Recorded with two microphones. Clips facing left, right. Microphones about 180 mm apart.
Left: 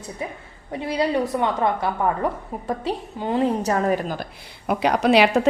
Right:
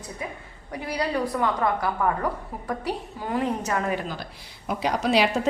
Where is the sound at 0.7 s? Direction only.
25° left (ahead or behind).